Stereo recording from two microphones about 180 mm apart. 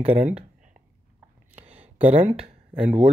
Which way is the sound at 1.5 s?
10° right (ahead or behind).